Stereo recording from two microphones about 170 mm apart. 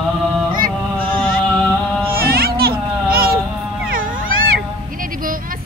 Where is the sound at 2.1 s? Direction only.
60° right (ahead or behind).